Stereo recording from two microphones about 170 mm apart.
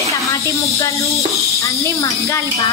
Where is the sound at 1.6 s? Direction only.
20° left (ahead or behind).